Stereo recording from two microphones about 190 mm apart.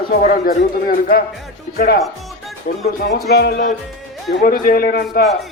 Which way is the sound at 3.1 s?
60° left (ahead or behind).